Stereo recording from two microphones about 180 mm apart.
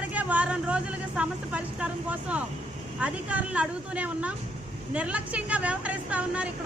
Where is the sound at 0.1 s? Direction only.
10° right (ahead or behind).